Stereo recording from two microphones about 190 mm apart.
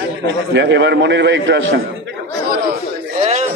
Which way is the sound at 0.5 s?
70° right (ahead or behind).